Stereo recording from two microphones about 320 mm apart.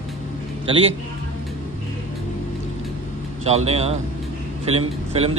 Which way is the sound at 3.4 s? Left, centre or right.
Centre.